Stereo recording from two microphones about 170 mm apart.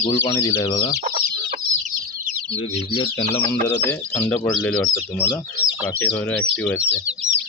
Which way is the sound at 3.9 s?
15° left (ahead or behind).